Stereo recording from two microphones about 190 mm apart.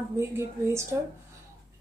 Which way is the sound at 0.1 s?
15° right (ahead or behind).